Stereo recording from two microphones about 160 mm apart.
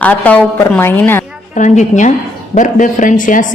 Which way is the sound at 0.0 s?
10° left (ahead or behind).